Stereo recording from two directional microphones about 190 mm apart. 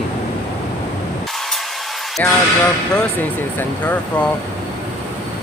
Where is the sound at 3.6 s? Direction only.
10° left (ahead or behind).